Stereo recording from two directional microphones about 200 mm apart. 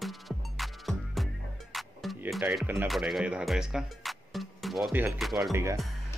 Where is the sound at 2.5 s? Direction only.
Centre (ahead or behind).